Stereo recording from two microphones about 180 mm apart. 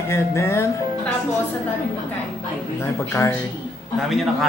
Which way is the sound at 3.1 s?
15° left (ahead or behind).